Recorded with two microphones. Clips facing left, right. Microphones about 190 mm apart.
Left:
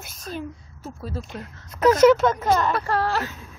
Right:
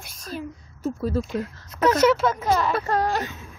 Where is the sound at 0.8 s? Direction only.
45° right (ahead or behind).